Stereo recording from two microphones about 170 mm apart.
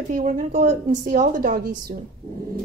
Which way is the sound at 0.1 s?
50° right (ahead or behind).